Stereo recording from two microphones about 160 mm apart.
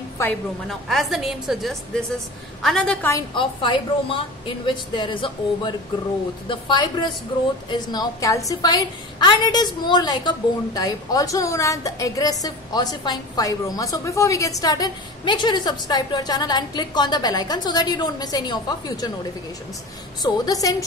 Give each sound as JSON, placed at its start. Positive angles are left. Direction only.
{"t": 0.2, "sound": "a woman's voice", "side_deg": 15}
{"t": 0.7, "sound": "a woman's voice", "side_deg": 0}
{"t": 3.3, "sound": "a woman's voice", "side_deg": 30}
{"t": 20.2, "sound": "a woman's voice", "side_deg": 20}